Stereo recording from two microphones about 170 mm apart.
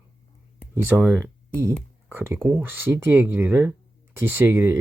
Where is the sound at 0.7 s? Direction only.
10° right (ahead or behind).